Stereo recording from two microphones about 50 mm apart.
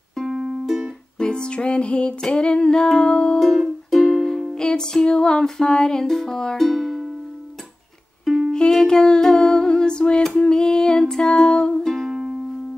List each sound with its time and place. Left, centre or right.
0.1 s music: centre
0.7 s music: centre
1.1 s music: centre
3.3 s music: centre
8.5 s music: centre